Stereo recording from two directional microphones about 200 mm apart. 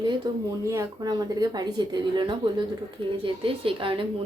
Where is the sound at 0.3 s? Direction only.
20° right (ahead or behind).